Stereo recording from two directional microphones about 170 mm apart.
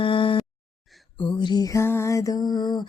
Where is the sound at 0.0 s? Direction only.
30° left (ahead or behind).